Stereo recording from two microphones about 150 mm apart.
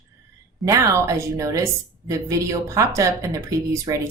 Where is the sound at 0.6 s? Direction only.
20° right (ahead or behind).